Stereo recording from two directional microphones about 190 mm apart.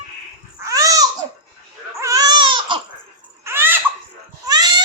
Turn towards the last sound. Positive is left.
turn(degrees=-20)  # may be behind; listen again after turning